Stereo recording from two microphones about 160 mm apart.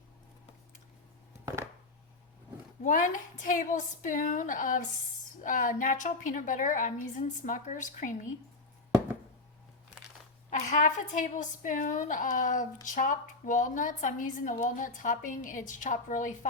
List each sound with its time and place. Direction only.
2.8 s a woman's voice: 55° left (ahead or behind)
10.7 s a woman's voice: 50° left (ahead or behind)